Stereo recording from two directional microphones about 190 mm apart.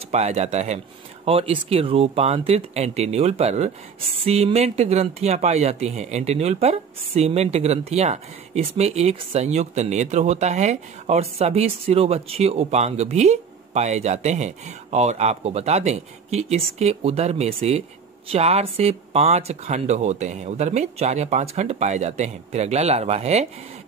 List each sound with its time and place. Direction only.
0.1 s speech: 35° right (ahead or behind)